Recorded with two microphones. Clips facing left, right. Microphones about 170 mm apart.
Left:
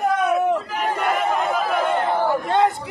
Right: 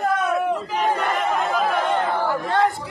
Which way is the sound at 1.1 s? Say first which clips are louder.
Left 1 dB; centre (ahead or behind).